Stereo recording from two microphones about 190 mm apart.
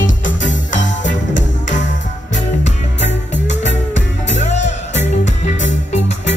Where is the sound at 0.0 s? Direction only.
80° left.